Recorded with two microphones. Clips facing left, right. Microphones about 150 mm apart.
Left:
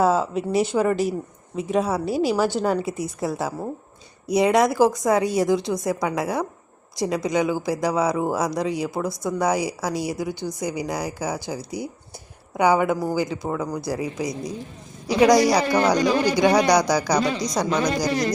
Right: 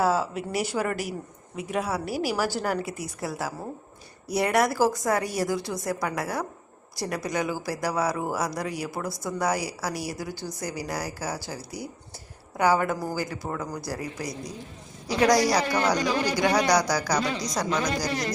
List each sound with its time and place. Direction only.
0.0 s a woman's voice: 20° left (ahead or behind)